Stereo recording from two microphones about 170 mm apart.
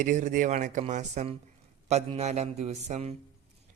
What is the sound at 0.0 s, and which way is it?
A man's voice, 45° right (ahead or behind).